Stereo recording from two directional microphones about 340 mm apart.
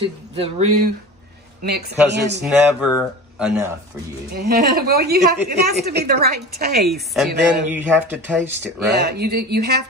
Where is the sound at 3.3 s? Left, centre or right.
Centre.